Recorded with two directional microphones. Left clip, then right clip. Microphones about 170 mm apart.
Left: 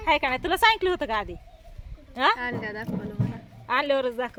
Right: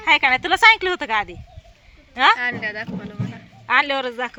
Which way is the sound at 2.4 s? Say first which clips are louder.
Right 7 dB; 20° left (ahead or behind).